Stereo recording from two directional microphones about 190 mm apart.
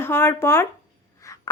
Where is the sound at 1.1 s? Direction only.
15° left (ahead or behind).